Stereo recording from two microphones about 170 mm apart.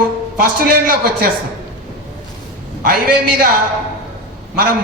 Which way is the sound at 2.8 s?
60° right (ahead or behind).